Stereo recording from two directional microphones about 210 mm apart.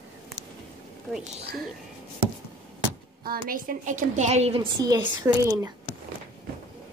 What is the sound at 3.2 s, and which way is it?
A woman's voice, 45° right (ahead or behind).